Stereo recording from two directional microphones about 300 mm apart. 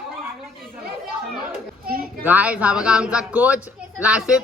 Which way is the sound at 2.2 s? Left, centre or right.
Centre.